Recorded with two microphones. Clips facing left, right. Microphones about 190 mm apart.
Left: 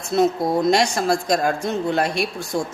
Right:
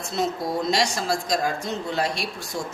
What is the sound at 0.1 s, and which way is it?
Speech, 50° left (ahead or behind).